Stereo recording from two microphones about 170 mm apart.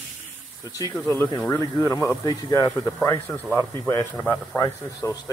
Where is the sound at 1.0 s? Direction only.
10° left (ahead or behind).